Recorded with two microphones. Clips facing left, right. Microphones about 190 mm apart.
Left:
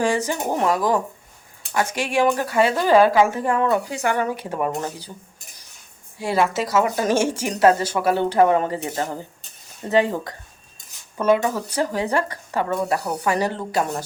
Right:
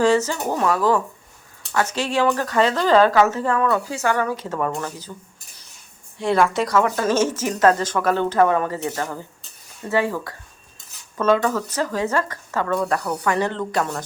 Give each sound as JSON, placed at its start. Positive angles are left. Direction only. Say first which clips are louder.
{"t": 0.0, "sound": "speech", "louder": "right 3 dB", "side_deg": 15}
{"t": 6.1, "sound": "speech", "louder": "right 2 dB", "side_deg": 5}
{"t": 6.7, "sound": "speech", "louder": "even", "side_deg": 15}
{"t": 11.3, "sound": "speech", "louder": "even", "side_deg": 15}
{"t": 13.5, "sound": "speech", "louder": "even", "side_deg": 10}